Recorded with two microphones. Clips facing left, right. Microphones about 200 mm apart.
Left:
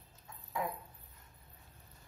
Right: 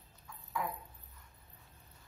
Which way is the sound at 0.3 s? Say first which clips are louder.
Left 1 dB; 20° left (ahead or behind).